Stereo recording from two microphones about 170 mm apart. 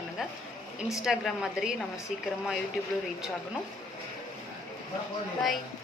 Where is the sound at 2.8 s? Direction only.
Centre (ahead or behind).